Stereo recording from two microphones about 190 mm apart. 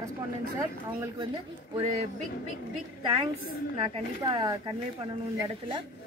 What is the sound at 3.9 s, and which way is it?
Speech, 20° right (ahead or behind).